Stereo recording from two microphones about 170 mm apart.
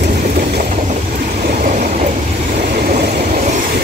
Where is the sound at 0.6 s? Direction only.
45° right (ahead or behind).